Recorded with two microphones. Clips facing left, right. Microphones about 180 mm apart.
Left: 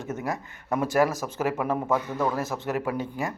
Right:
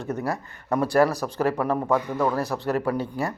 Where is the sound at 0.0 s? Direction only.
20° left (ahead or behind).